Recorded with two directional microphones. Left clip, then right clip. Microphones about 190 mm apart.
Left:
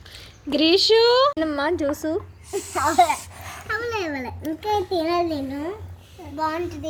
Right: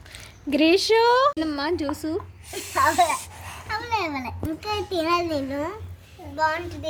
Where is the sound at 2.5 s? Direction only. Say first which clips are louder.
Even; 20° right (ahead or behind).